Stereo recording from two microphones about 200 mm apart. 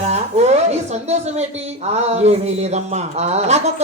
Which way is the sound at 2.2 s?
35° right (ahead or behind).